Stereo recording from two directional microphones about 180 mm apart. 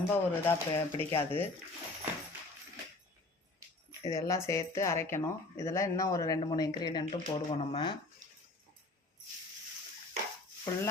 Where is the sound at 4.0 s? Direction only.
20° left (ahead or behind).